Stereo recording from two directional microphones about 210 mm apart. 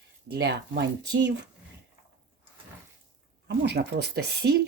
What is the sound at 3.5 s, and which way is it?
Speech, 50° right (ahead or behind).